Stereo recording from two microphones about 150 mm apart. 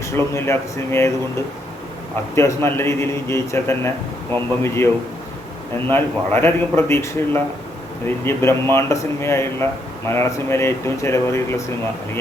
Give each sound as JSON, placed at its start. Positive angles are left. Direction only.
{"t": 0.3, "sound": "a man's voice", "side_deg": 15}
{"t": 2.3, "sound": "a man's voice", "side_deg": 20}
{"t": 5.9, "sound": "a man's voice", "side_deg": 15}